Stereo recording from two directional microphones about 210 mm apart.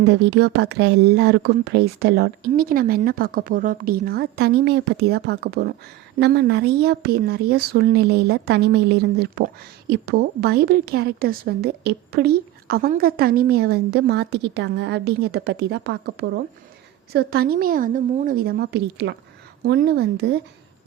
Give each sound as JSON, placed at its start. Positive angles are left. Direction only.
{"t": 0.1, "sound": "speech", "side_deg": -55}